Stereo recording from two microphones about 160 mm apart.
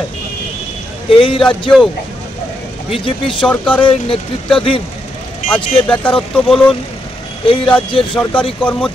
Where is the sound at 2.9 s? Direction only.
30° left (ahead or behind).